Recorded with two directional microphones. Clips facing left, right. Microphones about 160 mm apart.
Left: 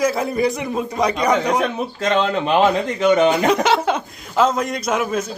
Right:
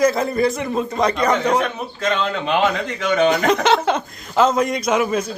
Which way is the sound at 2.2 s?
35° left (ahead or behind).